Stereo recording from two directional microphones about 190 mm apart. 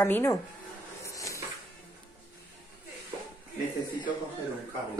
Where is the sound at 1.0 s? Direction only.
15° left (ahead or behind).